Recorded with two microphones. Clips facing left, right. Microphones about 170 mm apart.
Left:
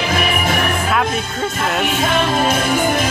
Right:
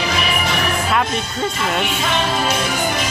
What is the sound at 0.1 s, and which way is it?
Music, 50° left (ahead or behind).